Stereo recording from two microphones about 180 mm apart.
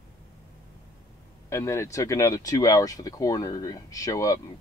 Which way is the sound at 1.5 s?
15° left (ahead or behind).